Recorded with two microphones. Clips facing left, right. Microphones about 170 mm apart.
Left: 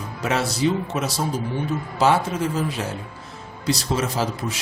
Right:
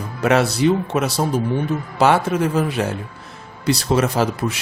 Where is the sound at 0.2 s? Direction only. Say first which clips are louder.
Right 6 dB; 65° right (ahead or behind).